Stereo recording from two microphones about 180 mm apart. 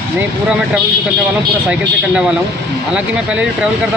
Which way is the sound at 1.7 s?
5° right (ahead or behind).